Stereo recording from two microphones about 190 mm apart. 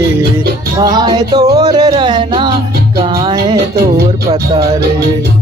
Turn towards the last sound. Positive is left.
turn(degrees=-20)  # may be behind; listen again after turning